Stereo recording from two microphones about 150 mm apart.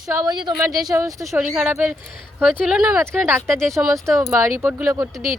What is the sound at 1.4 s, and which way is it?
Speech, 5° right (ahead or behind).